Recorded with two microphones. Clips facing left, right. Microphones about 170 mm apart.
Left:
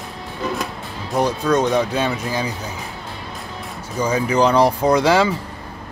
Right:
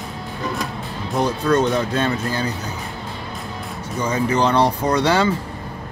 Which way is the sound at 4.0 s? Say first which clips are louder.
Left 2 dB; 10° left (ahead or behind).